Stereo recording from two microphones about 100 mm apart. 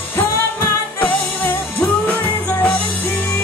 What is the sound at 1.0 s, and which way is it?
Music, 15° left (ahead or behind).